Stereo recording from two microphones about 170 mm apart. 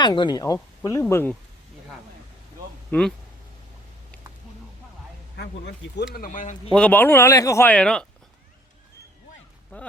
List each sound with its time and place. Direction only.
0.0 s speech: 25° left (ahead or behind); by 1.4 s 10° left (ahead or behind)
2.9 s speech: 10° left (ahead or behind)
5.4 s speech: 80° left
6.1 s speech: 50° left (ahead or behind)
6.7 s speech: 5° left (ahead or behind)
9.7 s speech: 10° left (ahead or behind)